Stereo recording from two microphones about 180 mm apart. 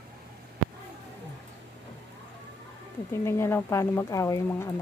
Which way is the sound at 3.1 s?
15° left (ahead or behind).